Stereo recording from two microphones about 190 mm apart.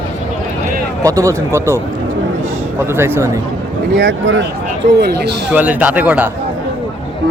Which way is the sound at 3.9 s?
70° right (ahead or behind).